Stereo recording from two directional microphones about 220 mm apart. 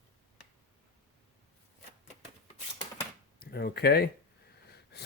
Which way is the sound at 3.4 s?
45° left (ahead or behind).